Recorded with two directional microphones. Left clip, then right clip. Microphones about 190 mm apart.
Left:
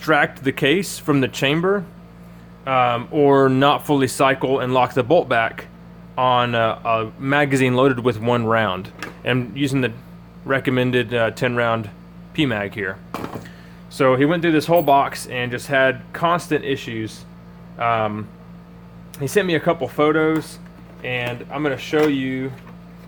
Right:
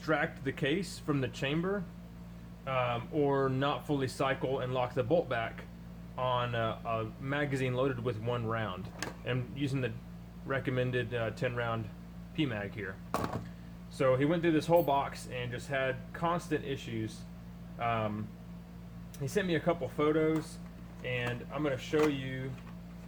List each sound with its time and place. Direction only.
0.0 s speech: 50° left (ahead or behind)